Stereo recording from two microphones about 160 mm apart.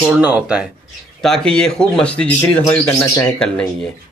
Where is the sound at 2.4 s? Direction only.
20° left (ahead or behind).